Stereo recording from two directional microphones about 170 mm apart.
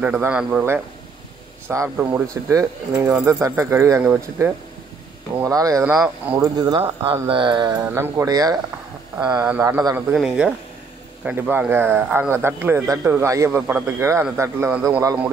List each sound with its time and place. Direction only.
0.0 s speech: 5° right (ahead or behind)
9.4 s speech: 10° right (ahead or behind)